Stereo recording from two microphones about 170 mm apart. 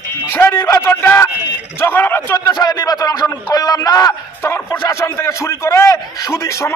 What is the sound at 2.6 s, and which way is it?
A man's voice, 25° left (ahead or behind).